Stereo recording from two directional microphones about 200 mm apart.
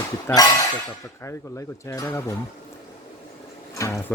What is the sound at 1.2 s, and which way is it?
Speech, 15° left (ahead or behind).